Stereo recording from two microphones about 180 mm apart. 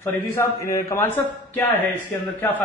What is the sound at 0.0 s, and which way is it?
A man's voice, 15° left (ahead or behind).